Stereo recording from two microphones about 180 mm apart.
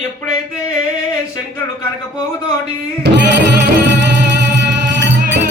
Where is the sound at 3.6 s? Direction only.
75° right (ahead or behind).